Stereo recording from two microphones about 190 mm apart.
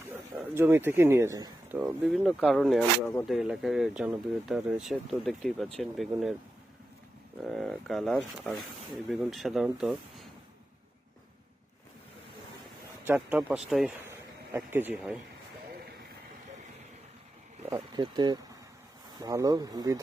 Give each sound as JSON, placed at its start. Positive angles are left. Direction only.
{"t": 0.1, "sound": "speech", "side_deg": -10}
{"t": 2.2, "sound": "speech", "side_deg": 0}
{"t": 7.4, "sound": "speech", "side_deg": 0}
{"t": 13.1, "sound": "speech", "side_deg": -5}
{"t": 14.1, "sound": "a sound", "side_deg": -15}
{"t": 17.7, "sound": "speech", "side_deg": -20}